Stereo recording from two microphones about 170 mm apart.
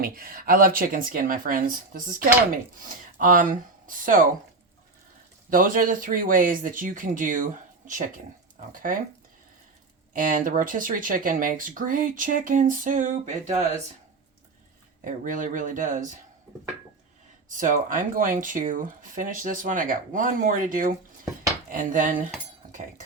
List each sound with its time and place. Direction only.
0.0 s speech: 60° right (ahead or behind)
5.5 s speech: 55° right (ahead or behind)
10.1 s speech: 50° right (ahead or behind)
15.0 s speech: 50° right (ahead or behind)
17.5 s speech: 50° right (ahead or behind)